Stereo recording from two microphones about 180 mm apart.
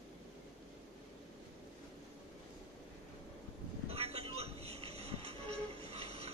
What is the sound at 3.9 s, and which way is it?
Music, 35° right (ahead or behind).